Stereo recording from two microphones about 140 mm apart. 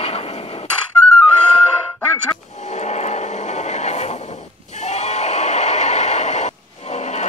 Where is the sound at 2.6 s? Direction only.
55° left (ahead or behind).